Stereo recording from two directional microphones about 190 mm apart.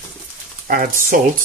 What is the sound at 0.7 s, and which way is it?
Speech, 45° right (ahead or behind).